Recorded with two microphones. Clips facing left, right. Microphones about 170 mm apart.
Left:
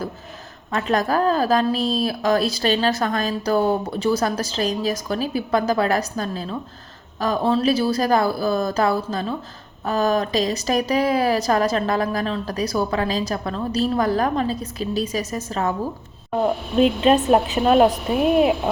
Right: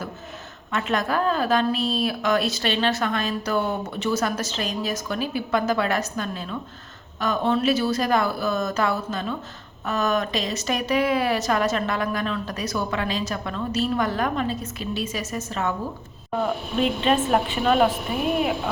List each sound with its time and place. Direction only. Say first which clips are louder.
0.7 s a woman's voice: left 4 dB; 35° left (ahead or behind)
17.0 s a woman's voice: left 5 dB; 40° left (ahead or behind)